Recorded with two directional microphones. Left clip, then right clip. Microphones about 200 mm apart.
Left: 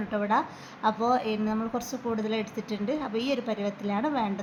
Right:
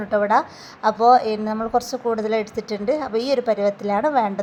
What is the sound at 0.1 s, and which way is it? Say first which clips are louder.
A woman's voice: right 9 dB; 25° right (ahead or behind).